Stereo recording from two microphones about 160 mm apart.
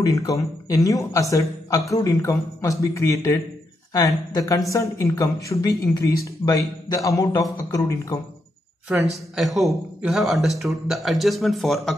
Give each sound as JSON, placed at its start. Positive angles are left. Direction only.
{"t": 0.0, "sound": "a man's voice", "side_deg": 20}
{"t": 8.8, "sound": "a man's voice", "side_deg": -5}